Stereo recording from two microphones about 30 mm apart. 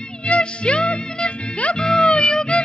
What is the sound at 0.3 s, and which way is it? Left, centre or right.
Music, left.